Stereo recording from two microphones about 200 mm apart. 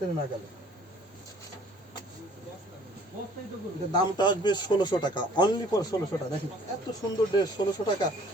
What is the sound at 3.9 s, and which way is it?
A man's voice, 20° left (ahead or behind).